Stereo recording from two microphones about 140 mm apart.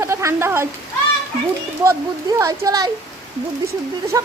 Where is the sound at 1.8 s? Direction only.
20° right (ahead or behind).